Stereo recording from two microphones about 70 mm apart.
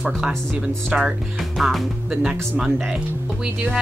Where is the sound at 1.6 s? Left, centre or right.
Centre.